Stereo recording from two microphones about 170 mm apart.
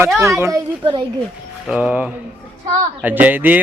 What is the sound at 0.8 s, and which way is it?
Speech, 25° right (ahead or behind).